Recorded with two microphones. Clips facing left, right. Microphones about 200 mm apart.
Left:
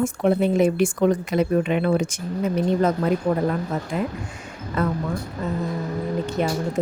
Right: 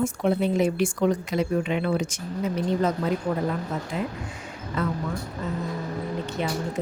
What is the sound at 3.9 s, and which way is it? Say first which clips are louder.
Speech: left 4 dB; 50° left (ahead or behind).